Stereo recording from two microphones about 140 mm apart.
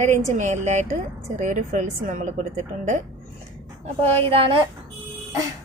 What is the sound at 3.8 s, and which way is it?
Speech, 50° right (ahead or behind).